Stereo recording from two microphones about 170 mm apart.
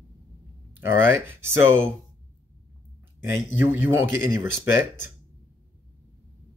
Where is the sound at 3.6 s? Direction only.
15° right (ahead or behind).